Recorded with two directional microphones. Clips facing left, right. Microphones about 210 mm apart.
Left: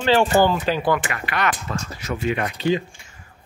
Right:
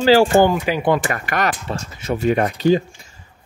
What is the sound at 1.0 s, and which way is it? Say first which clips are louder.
Speech: right 3 dB; 45° right (ahead or behind).